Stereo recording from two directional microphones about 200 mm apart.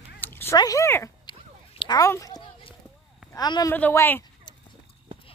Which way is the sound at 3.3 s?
20° left (ahead or behind).